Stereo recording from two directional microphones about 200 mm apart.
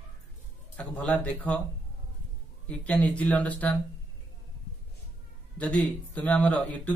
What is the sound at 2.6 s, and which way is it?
Speech, 5° left (ahead or behind).